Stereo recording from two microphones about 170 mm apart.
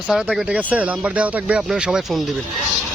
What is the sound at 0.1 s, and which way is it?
Speech, 5° right (ahead or behind).